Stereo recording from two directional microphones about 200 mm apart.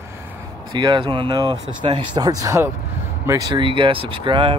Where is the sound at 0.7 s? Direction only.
20° right (ahead or behind).